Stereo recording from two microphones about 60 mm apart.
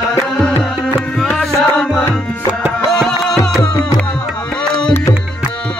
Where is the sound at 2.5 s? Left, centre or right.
Right.